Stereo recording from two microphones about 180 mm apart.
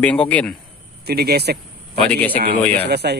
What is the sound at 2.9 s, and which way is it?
Speech, 65° right (ahead or behind).